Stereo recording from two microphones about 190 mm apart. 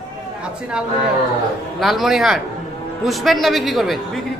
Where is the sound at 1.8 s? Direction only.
Centre (ahead or behind).